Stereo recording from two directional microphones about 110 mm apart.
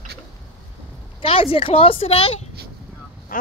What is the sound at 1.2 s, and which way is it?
A woman's voice, 60° left (ahead or behind).